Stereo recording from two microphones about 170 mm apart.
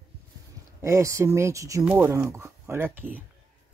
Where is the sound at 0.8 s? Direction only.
20° right (ahead or behind).